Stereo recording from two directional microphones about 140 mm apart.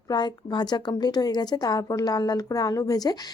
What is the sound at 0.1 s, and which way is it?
A woman's voice, 30° left (ahead or behind).